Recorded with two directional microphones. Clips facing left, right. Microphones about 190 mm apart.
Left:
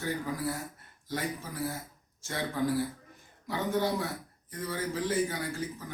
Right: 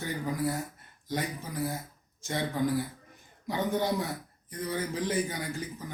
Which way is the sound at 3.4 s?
15° right (ahead or behind).